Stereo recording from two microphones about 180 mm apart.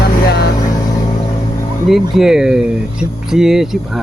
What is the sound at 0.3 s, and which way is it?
Vehicle, 65° left (ahead or behind).